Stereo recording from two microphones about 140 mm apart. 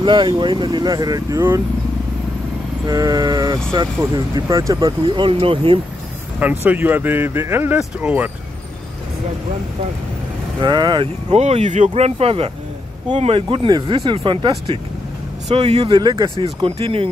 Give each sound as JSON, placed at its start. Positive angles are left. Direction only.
{"t": 0.0, "sound": "speech", "side_deg": -35}
{"t": 2.9, "sound": "speech", "side_deg": -25}
{"t": 6.4, "sound": "speech", "side_deg": -15}
{"t": 10.6, "sound": "speech", "side_deg": -30}
{"t": 11.4, "sound": "speech", "side_deg": -55}
{"t": 16.4, "sound": "speech", "side_deg": -40}